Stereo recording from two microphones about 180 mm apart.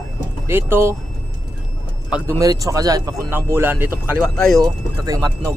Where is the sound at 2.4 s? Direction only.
20° right (ahead or behind).